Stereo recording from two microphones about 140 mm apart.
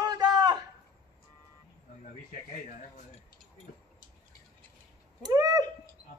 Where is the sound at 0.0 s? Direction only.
30° right (ahead or behind).